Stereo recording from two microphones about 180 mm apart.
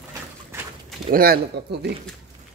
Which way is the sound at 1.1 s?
55° right (ahead or behind).